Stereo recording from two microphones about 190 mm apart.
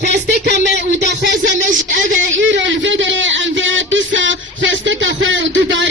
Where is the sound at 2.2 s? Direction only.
75° right (ahead or behind).